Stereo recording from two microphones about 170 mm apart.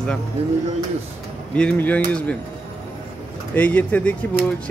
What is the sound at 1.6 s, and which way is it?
Speech, 10° left (ahead or behind).